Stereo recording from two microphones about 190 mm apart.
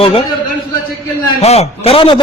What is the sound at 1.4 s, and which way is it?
Speech, 35° left (ahead or behind).